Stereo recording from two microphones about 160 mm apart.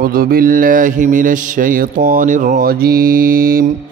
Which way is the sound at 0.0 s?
70° right (ahead or behind).